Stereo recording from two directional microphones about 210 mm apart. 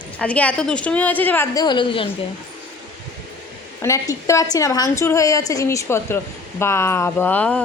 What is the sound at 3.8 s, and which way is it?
A woman's voice, 15° left (ahead or behind).